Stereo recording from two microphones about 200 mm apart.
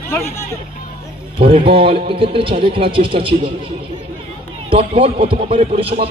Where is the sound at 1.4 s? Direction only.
25° right (ahead or behind).